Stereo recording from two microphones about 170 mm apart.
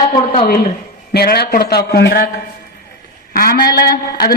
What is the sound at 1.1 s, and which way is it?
A man's voice, 65° left (ahead or behind).